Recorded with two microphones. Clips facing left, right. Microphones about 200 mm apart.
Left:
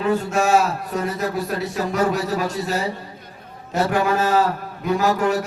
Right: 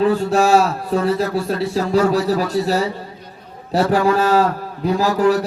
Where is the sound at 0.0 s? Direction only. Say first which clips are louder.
Right 5 dB; 35° right (ahead or behind).